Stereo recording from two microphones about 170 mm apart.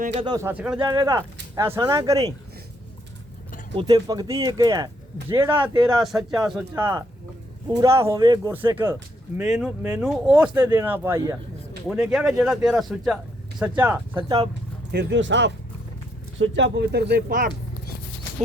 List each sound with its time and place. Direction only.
0.0 s speech: 40° right (ahead or behind)
0.3 s speech: 20° right (ahead or behind)
0.5 s speech: 10° right (ahead or behind)
0.8 s speech: 25° right (ahead or behind)
3.8 s speech: 25° right (ahead or behind)
6.0 s speech: centre (ahead or behind)
6.5 s speech: 15° right (ahead or behind)
8.5 s speech: 10° right (ahead or behind)
14.2 s speech: 25° right (ahead or behind)
14.9 s speech: 90° right; by 17.9 s 55° right (ahead or behind)